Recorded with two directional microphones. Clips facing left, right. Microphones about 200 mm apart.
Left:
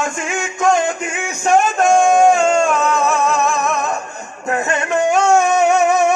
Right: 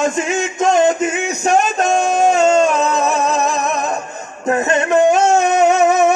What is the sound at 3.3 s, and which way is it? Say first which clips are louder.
Music: even; 20° right (ahead or behind).